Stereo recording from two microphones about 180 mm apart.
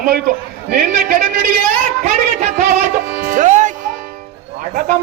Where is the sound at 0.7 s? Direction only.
50° right (ahead or behind).